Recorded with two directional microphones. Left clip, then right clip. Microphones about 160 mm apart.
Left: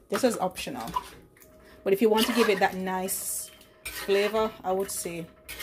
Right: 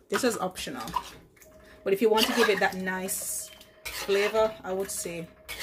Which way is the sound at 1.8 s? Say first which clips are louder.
Even; 20° left (ahead or behind).